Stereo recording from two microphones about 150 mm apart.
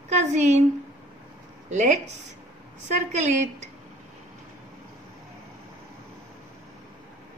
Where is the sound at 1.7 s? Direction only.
50° right (ahead or behind).